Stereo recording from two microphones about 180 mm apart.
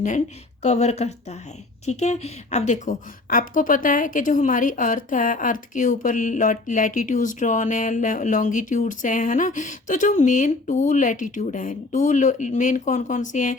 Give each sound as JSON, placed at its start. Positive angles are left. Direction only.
{"t": 0.6, "sound": "a woman's voice", "side_deg": 40}